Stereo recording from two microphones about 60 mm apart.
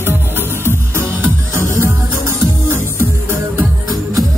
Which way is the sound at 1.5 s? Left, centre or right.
Right.